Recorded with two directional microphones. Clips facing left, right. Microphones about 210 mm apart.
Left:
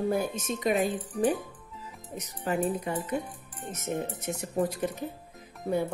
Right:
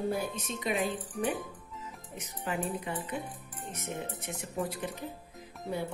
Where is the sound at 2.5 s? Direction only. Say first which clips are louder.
Left 6 dB; 40° left (ahead or behind).